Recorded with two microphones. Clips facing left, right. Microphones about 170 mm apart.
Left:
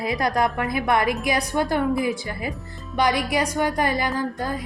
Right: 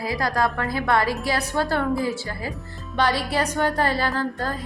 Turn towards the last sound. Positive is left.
turn(degrees=15)  # may be behind; listen again after turning